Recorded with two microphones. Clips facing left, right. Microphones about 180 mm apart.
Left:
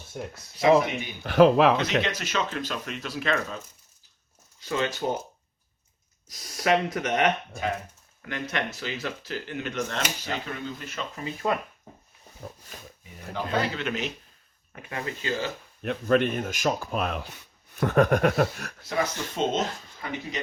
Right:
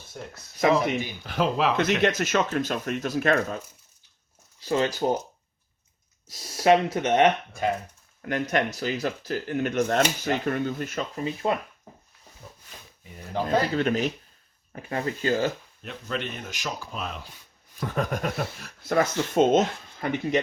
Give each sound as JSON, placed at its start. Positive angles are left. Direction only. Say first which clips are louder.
{"t": 0.1, "sound": "speech", "louder": "left 4 dB", "side_deg": 15}
{"t": 1.2, "sound": "speech", "louder": "left 8 dB", "side_deg": 65}
{"t": 1.7, "sound": "speech", "louder": "right 3 dB", "side_deg": -50}
{"t": 4.6, "sound": "speech", "louder": "right 4 dB", "side_deg": -35}
{"t": 6.2, "sound": "speech", "louder": "right 5 dB", "side_deg": -25}
{"t": 8.2, "sound": "speech", "louder": "right 6 dB", "side_deg": -40}
{"t": 11.4, "sound": "speech", "louder": "even", "side_deg": -25}
{"t": 12.4, "sound": "speech", "louder": "left 7 dB", "side_deg": 50}
{"t": 13.3, "sound": "speech", "louder": "right 4 dB", "side_deg": -40}
{"t": 15.8, "sound": "speech", "louder": "left 10 dB", "side_deg": 55}
{"t": 18.9, "sound": "speech", "louder": "right 5 dB", "side_deg": -50}